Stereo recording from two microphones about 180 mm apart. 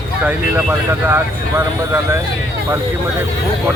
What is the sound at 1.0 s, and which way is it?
Speech, 15° right (ahead or behind).